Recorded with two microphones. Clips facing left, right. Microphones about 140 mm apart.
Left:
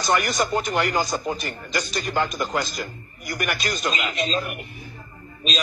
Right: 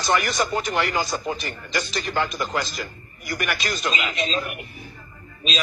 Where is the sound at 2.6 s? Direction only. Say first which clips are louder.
Left 1 dB; 45° left (ahead or behind).